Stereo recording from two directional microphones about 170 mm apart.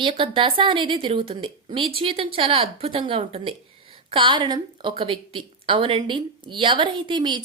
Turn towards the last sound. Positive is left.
turn(degrees=-25)  # may be behind; listen again after turning